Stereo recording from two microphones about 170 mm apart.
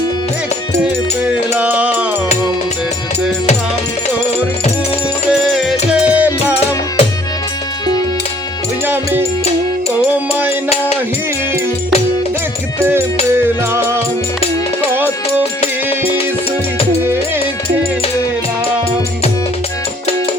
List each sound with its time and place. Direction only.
1.5 s music: 10° right (ahead or behind)
5.3 s music: centre (ahead or behind)
12.8 s music: 15° right (ahead or behind)
15.6 s music: 35° left (ahead or behind)